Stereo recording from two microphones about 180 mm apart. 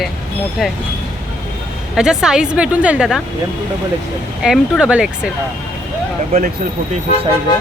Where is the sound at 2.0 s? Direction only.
5° right (ahead or behind).